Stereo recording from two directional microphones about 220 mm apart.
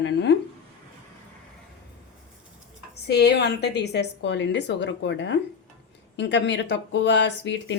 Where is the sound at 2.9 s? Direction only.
50° left (ahead or behind).